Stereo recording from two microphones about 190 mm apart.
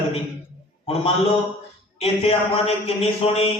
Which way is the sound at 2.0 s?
30° left (ahead or behind).